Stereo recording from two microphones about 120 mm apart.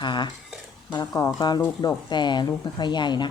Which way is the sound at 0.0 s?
40° left (ahead or behind).